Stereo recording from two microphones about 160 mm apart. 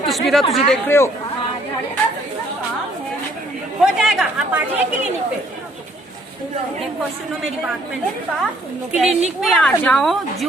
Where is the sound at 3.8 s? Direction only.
Centre (ahead or behind).